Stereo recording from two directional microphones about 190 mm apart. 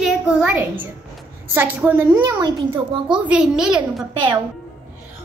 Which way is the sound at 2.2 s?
20° right (ahead or behind).